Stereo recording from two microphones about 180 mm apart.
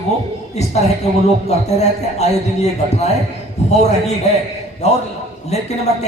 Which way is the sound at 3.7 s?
40° left (ahead or behind).